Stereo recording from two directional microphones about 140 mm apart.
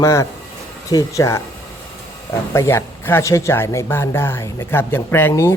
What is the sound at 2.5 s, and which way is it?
Speech, 20° left (ahead or behind).